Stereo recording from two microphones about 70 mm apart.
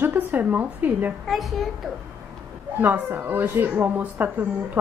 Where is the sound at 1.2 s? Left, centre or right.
Centre.